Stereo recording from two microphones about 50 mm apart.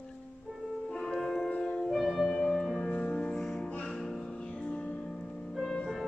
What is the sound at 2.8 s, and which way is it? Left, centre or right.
Music, left.